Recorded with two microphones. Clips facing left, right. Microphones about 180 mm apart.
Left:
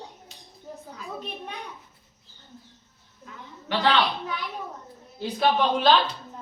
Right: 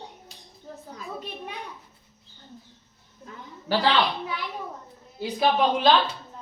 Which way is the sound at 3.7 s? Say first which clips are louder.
Right 3 dB; 35° right (ahead or behind).